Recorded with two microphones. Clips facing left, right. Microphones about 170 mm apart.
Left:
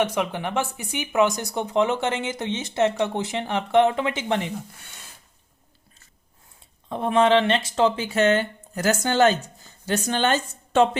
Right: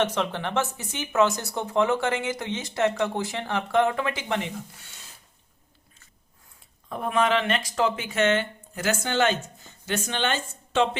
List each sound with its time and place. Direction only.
0.0 s speech: 10° left (ahead or behind)
6.8 s speech: 25° left (ahead or behind); by 10.8 s 45° left (ahead or behind)